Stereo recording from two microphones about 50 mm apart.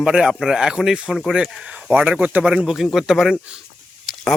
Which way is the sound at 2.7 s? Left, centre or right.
Centre.